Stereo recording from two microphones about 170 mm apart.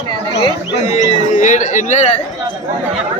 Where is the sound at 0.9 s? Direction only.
45° left (ahead or behind).